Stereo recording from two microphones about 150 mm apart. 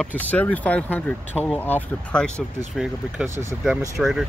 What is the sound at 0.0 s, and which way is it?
Speech, 10° left (ahead or behind).